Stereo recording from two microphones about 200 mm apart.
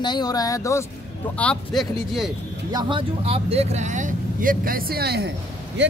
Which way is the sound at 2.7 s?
25° right (ahead or behind).